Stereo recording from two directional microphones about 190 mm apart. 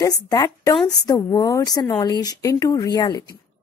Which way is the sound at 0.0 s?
20° left (ahead or behind).